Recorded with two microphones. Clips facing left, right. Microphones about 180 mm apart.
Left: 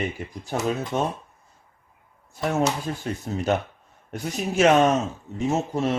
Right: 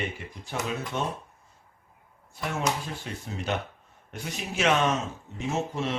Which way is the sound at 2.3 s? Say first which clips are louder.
Left 6 dB; 40° left (ahead or behind).